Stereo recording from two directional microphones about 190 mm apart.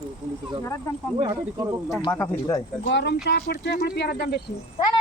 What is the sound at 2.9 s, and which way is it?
Speech, 65° left (ahead or behind).